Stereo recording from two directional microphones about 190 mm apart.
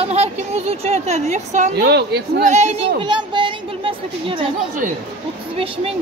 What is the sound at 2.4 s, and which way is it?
Speech, 35° right (ahead or behind).